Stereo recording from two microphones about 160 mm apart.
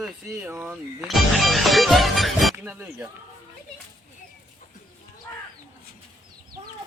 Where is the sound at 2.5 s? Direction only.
10° right (ahead or behind).